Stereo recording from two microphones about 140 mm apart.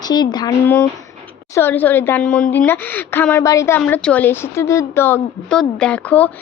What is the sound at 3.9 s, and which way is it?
Speech, 10° left (ahead or behind).